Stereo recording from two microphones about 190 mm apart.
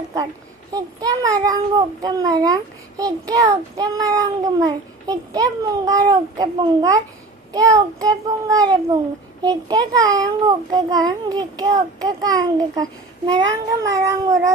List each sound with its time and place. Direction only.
0.7 s a child's voice: 20° right (ahead or behind)
13.5 s cat: 15° right (ahead or behind)